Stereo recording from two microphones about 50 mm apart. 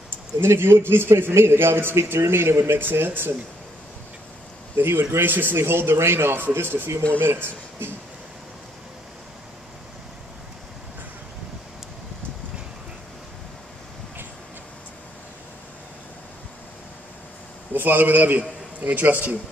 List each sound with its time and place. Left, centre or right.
0.4 s a man's voice: right
2.8 s a man's voice: right
4.7 s a man's voice: right
17.7 s a man's voice: right